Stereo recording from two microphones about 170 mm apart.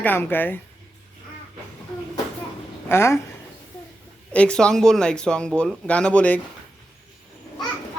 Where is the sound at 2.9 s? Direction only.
15° left (ahead or behind).